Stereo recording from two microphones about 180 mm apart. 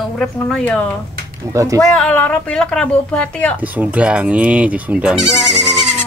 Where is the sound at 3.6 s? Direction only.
10° right (ahead or behind).